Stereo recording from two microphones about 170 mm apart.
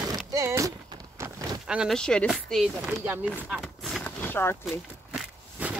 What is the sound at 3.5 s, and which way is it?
Vehicle, centre (ahead or behind).